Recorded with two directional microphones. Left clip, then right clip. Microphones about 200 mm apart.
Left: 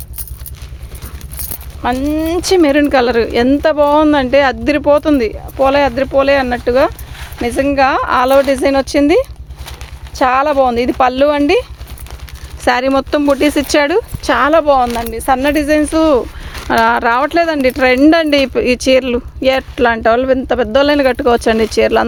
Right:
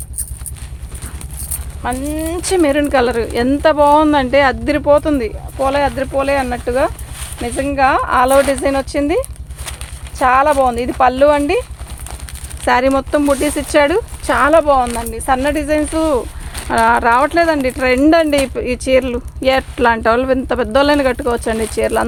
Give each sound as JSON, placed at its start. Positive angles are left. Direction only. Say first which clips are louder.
{"t": 1.8, "sound": "speech", "louder": "left 5 dB", "side_deg": 55}
{"t": 12.6, "sound": "speech", "louder": "left 1 dB", "side_deg": 45}
{"t": 19.4, "sound": "speech", "louder": "left 1 dB", "side_deg": 25}